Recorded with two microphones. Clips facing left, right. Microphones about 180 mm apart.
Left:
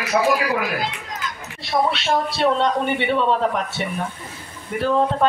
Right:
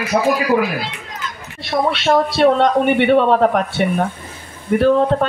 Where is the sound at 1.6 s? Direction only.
60° right (ahead or behind).